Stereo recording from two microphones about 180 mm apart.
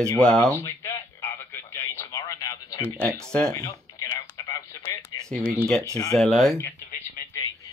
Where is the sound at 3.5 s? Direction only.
20° left (ahead or behind).